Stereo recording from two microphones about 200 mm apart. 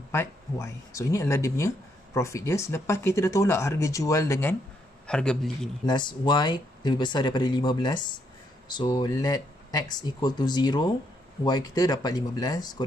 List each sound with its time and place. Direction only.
0.1 s a man's voice: 15° left (ahead or behind)
5.9 s speech: 20° left (ahead or behind)